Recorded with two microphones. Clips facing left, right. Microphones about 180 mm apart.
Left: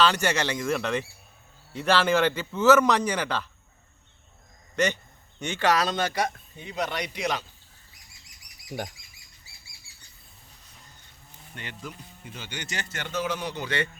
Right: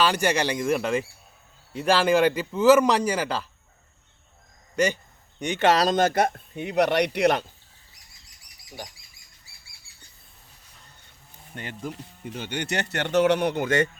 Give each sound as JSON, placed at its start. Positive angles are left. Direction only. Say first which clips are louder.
{"t": 0.0, "sound": "a man's voice", "louder": "right 1 dB", "side_deg": -15}
{"t": 5.4, "sound": "a man's voice", "louder": "right 4 dB", "side_deg": -20}
{"t": 5.7, "sound": "speech", "louder": "right 5 dB", "side_deg": -40}
{"t": 11.5, "sound": "speech", "louder": "right 5 dB", "side_deg": -45}